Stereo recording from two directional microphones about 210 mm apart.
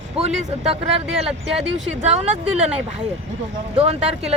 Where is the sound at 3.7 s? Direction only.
30° right (ahead or behind).